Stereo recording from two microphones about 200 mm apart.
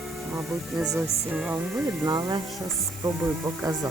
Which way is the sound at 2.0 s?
20° right (ahead or behind).